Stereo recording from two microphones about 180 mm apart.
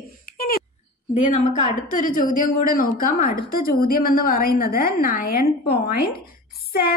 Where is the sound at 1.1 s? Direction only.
40° left (ahead or behind).